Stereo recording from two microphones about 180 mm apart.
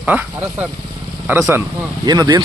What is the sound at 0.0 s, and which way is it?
Speech, 10° right (ahead or behind).